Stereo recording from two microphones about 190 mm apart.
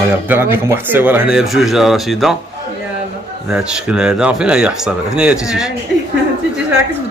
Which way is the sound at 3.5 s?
5° right (ahead or behind).